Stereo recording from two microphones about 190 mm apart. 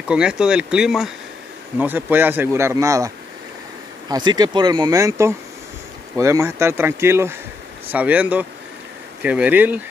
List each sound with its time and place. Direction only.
0.1 s speech: 5° right (ahead or behind)
4.1 s speech: 20° right (ahead or behind)